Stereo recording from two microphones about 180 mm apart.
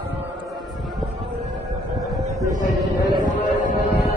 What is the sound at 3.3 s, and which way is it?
Music, 45° left (ahead or behind).